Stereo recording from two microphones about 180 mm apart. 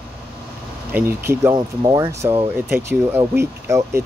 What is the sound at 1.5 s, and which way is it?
Speech, 25° right (ahead or behind).